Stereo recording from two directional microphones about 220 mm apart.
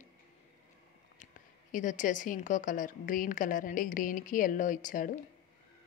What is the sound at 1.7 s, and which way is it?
A woman's voice, 35° left (ahead or behind).